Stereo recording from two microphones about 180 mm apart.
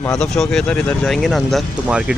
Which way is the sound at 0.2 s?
5° left (ahead or behind).